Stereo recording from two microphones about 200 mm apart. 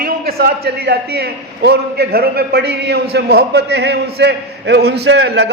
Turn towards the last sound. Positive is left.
turn(degrees=-60)  # may be behind; listen again after turning